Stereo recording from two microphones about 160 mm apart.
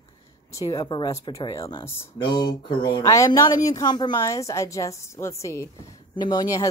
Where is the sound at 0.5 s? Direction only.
20° left (ahead or behind).